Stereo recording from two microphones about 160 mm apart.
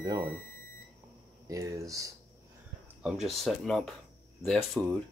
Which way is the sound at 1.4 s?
20° right (ahead or behind).